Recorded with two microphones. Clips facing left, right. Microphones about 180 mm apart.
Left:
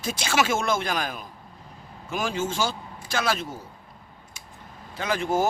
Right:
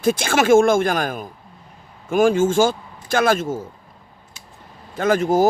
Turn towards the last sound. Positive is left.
turn(degrees=-40)  # may be behind; listen again after turning